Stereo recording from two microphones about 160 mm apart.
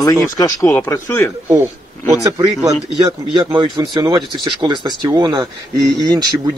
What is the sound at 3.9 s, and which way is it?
Speech, 25° right (ahead or behind).